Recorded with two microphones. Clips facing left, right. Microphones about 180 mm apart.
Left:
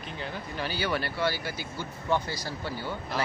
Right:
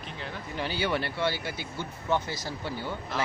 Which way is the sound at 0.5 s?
20° right (ahead or behind).